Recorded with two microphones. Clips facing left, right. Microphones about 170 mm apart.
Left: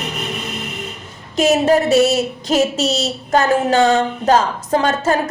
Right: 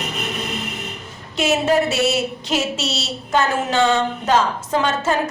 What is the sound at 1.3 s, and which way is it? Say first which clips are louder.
A woman's voice: left 4 dB; 40° left (ahead or behind).